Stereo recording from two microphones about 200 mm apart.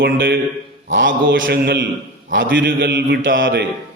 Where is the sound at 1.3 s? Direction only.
65° right (ahead or behind).